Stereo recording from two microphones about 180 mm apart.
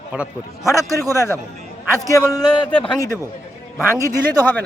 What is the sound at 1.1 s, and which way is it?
A man's voice, 15° left (ahead or behind).